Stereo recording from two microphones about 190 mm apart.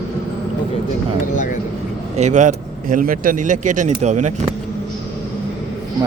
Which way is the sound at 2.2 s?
40° right (ahead or behind).